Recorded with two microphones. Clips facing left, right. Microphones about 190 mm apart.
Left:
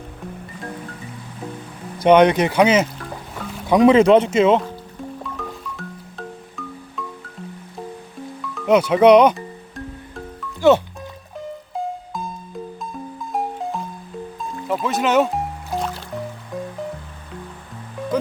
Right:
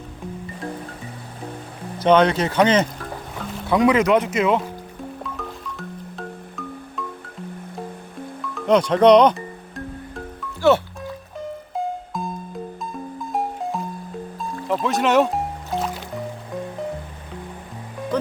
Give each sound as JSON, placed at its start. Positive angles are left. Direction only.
{"t": 2.0, "sound": "speech", "side_deg": 15}
{"t": 3.7, "sound": "speech", "side_deg": 25}
{"t": 5.2, "sound": "music", "side_deg": 0}
{"t": 8.5, "sound": "music", "side_deg": 5}
{"t": 10.6, "sound": "speech", "side_deg": 15}
{"t": 11.3, "sound": "music", "side_deg": 0}